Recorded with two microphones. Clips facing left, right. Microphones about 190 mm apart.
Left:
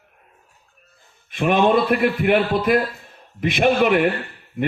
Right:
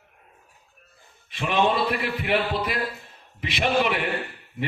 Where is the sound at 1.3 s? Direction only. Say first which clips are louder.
Left 6 dB; 55° left (ahead or behind).